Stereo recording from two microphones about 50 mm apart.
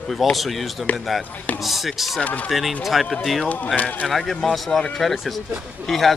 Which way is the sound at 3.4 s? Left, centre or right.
Left.